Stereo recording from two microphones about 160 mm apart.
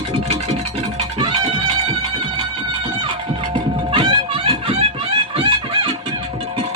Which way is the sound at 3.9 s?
35° right (ahead or behind).